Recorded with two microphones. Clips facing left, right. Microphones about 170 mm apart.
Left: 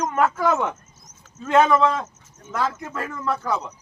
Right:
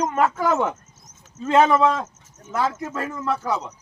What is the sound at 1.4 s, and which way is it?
Speech, 30° right (ahead or behind).